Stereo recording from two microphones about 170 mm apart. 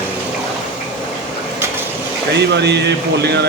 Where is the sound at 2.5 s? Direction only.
90° right.